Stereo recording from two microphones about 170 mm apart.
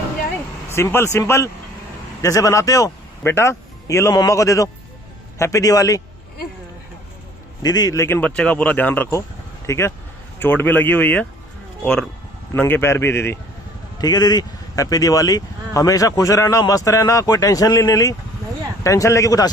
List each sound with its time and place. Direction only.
0.7 s a man's voice: 15° left (ahead or behind)
7.6 s speech: 25° left (ahead or behind)